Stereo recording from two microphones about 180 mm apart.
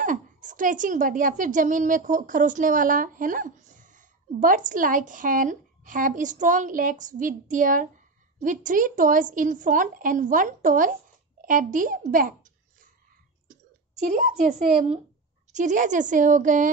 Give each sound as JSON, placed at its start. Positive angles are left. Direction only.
{"t": 0.0, "sound": "a woman's voice", "side_deg": -45}
{"t": 11.4, "sound": "a sound", "side_deg": -50}
{"t": 13.5, "sound": "a woman's voice", "side_deg": -45}